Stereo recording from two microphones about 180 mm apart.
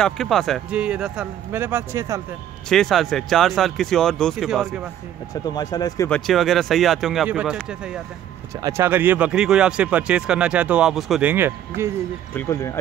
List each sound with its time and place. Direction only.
0.0 s speech: centre (ahead or behind); by 2.2 s 15° right (ahead or behind)
2.7 s speech: centre (ahead or behind)
5.3 s speech: 20° left (ahead or behind)
6.0 s speech: 5° left (ahead or behind); by 11.9 s 15° right (ahead or behind)
12.4 s speech: 15° left (ahead or behind)